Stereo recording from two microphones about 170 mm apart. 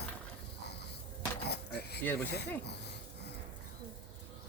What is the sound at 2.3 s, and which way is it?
Speech, 75° left (ahead or behind).